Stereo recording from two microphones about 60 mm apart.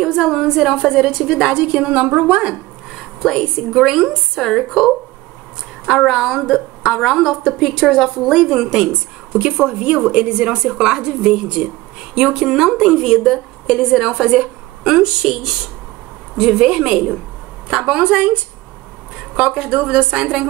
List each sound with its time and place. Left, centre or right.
0.0 s a woman's voice: centre
1.5 s a woman's voice: centre
3.2 s a woman's voice: centre
12.9 s a woman's voice: centre
14.3 s a woman's voice: centre
16.3 s a woman's voice: centre
19.3 s a woman's voice: centre